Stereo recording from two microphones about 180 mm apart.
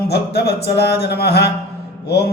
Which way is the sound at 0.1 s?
60° left (ahead or behind).